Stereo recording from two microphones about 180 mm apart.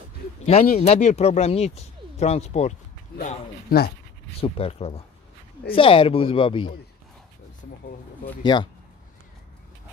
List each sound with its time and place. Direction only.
0.7 s speech: 40° left (ahead or behind)
3.2 s speech: 55° left (ahead or behind)
4.4 s speech: 30° left (ahead or behind)
8.5 s speech: 25° left (ahead or behind)